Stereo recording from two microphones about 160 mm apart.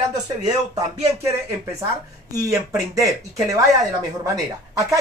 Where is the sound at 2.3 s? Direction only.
20° right (ahead or behind).